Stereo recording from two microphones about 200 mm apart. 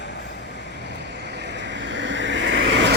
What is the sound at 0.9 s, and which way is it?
Vehicle, 55° right (ahead or behind).